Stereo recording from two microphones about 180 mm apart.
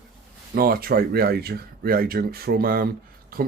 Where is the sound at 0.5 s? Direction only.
55° right (ahead or behind).